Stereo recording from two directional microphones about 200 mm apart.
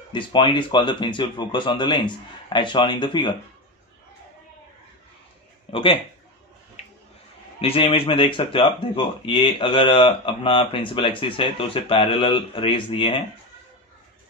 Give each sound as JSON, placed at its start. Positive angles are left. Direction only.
{"t": 0.1, "sound": "speech", "side_deg": 25}
{"t": 5.7, "sound": "speech", "side_deg": 25}
{"t": 7.6, "sound": "speech", "side_deg": 30}